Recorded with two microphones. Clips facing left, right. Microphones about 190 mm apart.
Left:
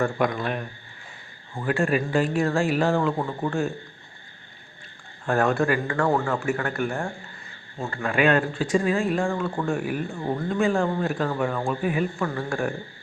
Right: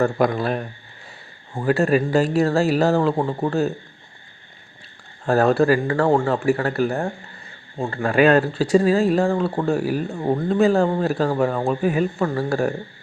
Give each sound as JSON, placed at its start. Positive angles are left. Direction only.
{"t": 0.0, "sound": "speech", "side_deg": -35}
{"t": 5.2, "sound": "speech", "side_deg": -35}